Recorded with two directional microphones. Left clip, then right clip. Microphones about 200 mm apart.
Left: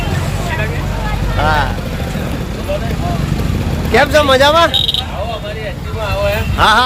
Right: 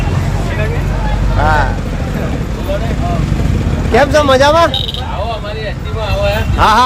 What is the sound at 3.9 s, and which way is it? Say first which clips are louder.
Speech: right 1 dB; 5° right (ahead or behind).